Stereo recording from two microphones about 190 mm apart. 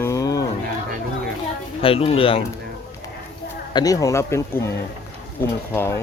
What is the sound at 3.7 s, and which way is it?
Speech, 20° left (ahead or behind).